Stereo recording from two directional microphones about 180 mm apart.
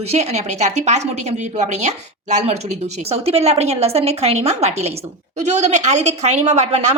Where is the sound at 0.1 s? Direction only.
35° right (ahead or behind).